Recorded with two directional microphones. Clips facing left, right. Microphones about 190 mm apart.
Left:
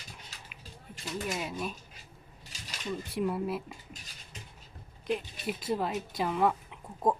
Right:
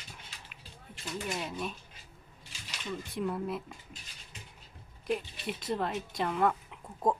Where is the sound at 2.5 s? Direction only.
40° left (ahead or behind).